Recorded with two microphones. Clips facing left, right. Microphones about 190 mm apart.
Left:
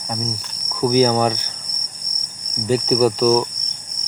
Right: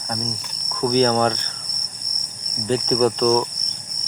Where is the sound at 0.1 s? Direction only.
5° left (ahead or behind).